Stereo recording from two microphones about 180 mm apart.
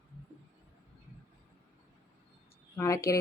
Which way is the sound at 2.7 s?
15° left (ahead or behind).